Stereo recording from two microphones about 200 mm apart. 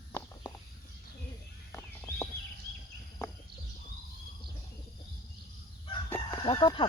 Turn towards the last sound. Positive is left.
turn(degrees=25)  # may be behind; listen again after turning